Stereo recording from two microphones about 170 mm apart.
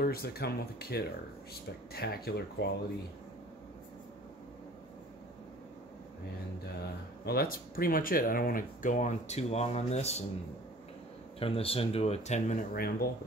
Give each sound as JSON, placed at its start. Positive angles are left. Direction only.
{"t": 0.0, "sound": "speech", "side_deg": 65}
{"t": 7.2, "sound": "speech", "side_deg": 60}
{"t": 11.3, "sound": "speech", "side_deg": 35}
{"t": 12.7, "sound": "speech", "side_deg": 60}